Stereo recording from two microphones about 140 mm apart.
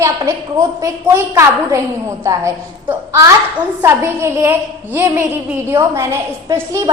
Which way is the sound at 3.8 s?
20° right (ahead or behind).